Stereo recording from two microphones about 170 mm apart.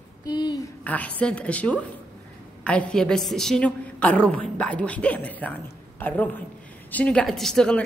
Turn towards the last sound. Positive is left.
turn(degrees=5)  # may be behind; listen again after turning